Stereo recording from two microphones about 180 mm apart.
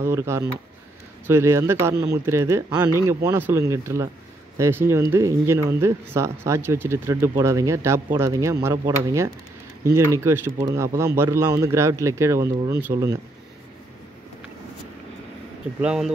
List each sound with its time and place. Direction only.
0.0 s speech: 15° right (ahead or behind)
15.8 s speech: 5° right (ahead or behind)